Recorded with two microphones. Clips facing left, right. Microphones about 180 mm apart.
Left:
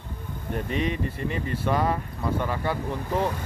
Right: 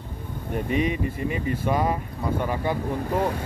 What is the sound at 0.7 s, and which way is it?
Speech, 10° right (ahead or behind).